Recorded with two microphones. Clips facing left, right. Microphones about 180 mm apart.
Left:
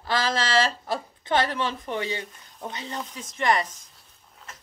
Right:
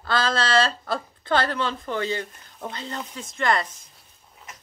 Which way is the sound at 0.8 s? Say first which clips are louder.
Right 1 dB; 15° left (ahead or behind).